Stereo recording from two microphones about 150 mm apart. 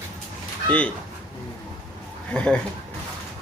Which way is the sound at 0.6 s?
10° left (ahead or behind).